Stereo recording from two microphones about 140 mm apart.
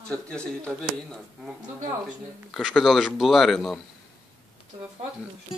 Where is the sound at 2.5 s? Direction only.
Centre (ahead or behind).